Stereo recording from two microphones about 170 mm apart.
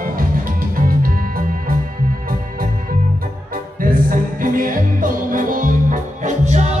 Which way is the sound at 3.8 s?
55° right (ahead or behind).